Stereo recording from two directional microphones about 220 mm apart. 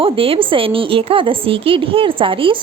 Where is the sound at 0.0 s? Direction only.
25° right (ahead or behind).